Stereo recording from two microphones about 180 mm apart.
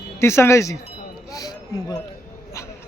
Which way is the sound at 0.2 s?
15° left (ahead or behind).